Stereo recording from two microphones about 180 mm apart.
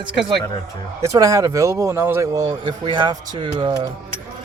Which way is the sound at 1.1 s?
20° right (ahead or behind).